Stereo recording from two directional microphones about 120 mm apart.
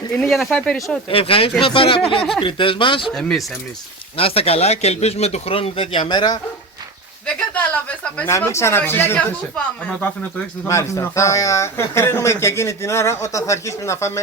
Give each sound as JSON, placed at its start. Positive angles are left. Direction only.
{"t": 0.2, "sound": "speech", "side_deg": 0}
{"t": 1.1, "sound": "a man's voice", "side_deg": 50}
{"t": 3.1, "sound": "speech", "side_deg": 5}
{"t": 4.2, "sound": "a man's voice", "side_deg": 55}
{"t": 7.3, "sound": "a woman's voice", "side_deg": 10}
{"t": 8.3, "sound": "a man's voice", "side_deg": 25}
{"t": 10.7, "sound": "a man's voice", "side_deg": 25}